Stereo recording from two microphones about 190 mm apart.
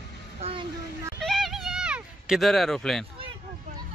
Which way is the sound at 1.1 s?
Centre (ahead or behind).